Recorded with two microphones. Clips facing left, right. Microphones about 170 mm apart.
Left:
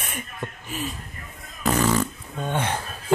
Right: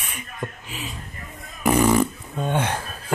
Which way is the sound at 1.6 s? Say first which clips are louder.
Right 4 dB; 15° right (ahead or behind).